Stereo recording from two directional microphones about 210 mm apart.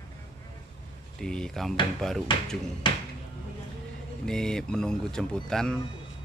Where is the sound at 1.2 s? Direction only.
5° left (ahead or behind).